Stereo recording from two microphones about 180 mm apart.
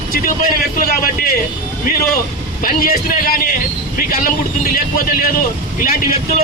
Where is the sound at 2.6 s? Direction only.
50° left (ahead or behind).